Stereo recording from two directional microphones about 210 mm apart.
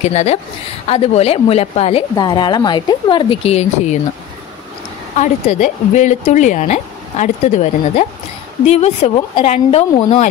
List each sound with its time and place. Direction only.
0.0 s a woman's voice: 30° left (ahead or behind)
5.1 s speech: 35° left (ahead or behind)